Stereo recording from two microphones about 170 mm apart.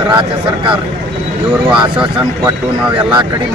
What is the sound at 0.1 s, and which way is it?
Speech, 30° right (ahead or behind).